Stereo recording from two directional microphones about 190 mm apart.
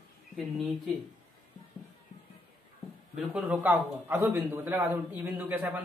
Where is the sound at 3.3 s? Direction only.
10° right (ahead or behind).